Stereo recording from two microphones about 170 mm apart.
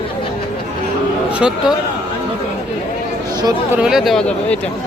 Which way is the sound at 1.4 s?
5° right (ahead or behind).